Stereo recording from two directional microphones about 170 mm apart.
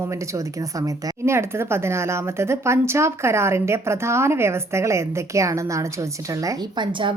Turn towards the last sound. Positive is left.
turn(degrees=-30)  # may be behind; listen again after turning